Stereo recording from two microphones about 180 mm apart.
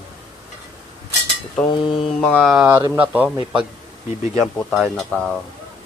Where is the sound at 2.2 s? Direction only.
10° left (ahead or behind).